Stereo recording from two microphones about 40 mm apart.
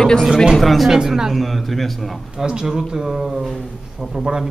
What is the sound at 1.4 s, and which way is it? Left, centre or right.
Speech, centre.